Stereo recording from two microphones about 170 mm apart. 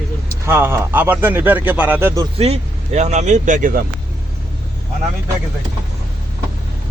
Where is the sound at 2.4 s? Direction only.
40° right (ahead or behind).